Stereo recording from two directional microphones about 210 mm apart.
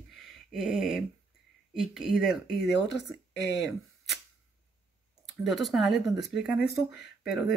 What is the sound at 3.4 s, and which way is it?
Speech, 55° left (ahead or behind).